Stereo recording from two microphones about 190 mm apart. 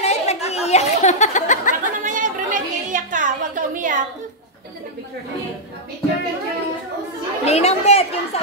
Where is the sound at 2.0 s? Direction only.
45° right (ahead or behind).